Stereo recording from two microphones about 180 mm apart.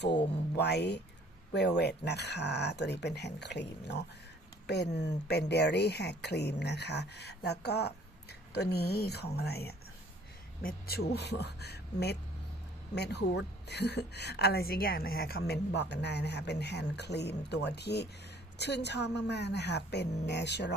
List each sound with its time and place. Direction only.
0.0 s speech: 70° left (ahead or behind)